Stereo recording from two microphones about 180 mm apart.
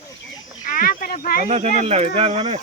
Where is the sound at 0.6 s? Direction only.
50° left (ahead or behind).